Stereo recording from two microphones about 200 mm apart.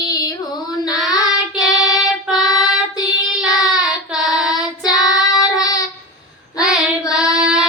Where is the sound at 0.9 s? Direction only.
20° left (ahead or behind).